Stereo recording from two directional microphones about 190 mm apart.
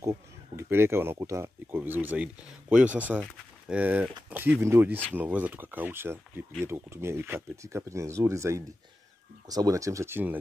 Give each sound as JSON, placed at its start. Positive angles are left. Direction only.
{"t": 0.6, "sound": "speech", "side_deg": -10}